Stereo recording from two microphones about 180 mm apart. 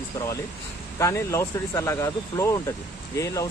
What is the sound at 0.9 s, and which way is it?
Speech, 15° left (ahead or behind).